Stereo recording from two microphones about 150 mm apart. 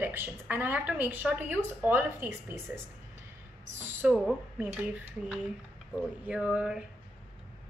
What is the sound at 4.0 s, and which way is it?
A woman's voice, 10° right (ahead or behind).